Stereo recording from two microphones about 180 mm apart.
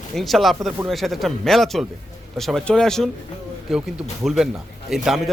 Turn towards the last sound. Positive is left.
turn(degrees=0)  # may be behind; listen again after turning